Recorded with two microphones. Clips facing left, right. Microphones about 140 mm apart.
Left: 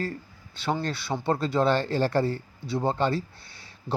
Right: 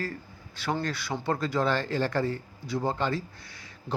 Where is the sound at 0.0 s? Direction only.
25° left (ahead or behind).